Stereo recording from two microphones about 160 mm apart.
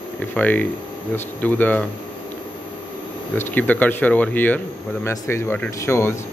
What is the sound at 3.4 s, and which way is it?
Speech, 10° left (ahead or behind).